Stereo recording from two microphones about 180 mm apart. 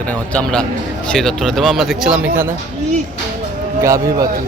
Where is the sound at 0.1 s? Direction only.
5° left (ahead or behind).